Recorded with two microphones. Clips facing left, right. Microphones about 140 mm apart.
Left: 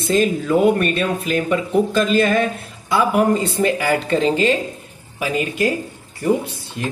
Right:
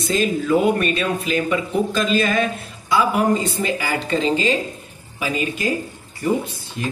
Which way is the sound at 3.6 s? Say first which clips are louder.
Left 5 dB; 55° left (ahead or behind).